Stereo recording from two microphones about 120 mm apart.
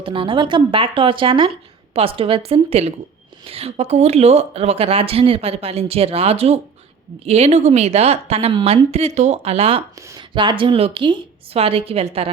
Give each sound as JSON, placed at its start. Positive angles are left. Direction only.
{"t": 0.0, "sound": "a woman's voice", "side_deg": -45}
{"t": 10.2, "sound": "speech", "side_deg": -40}